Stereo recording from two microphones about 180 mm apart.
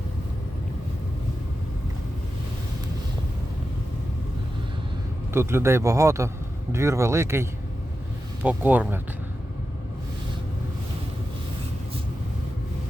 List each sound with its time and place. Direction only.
5.3 s a man's voice: 15° right (ahead or behind)
8.4 s a man's voice: 10° right (ahead or behind)